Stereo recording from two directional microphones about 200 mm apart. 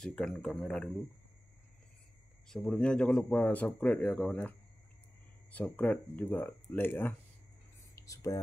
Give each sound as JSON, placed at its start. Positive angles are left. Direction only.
{"t": 0.0, "sound": "speech", "side_deg": 5}
{"t": 2.4, "sound": "speech", "side_deg": 0}
{"t": 7.9, "sound": "a sound", "side_deg": 15}